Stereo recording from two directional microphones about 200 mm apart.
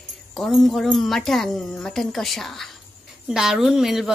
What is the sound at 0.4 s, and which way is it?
A woman's voice, centre (ahead or behind).